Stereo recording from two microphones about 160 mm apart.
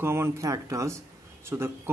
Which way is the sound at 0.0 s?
15° right (ahead or behind).